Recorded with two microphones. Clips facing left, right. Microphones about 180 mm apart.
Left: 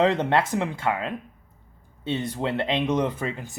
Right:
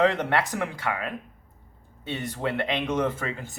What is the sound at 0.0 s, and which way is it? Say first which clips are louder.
Speech: left 2 dB; 20° left (ahead or behind).